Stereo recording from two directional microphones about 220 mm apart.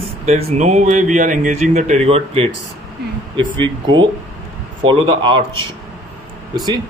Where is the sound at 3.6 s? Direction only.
20° right (ahead or behind).